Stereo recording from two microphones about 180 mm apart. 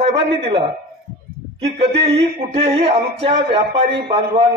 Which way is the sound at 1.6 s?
35° right (ahead or behind).